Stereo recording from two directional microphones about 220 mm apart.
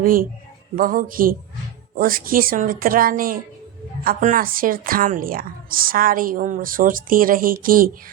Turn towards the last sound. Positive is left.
turn(degrees=-40)  # may be behind; listen again after turning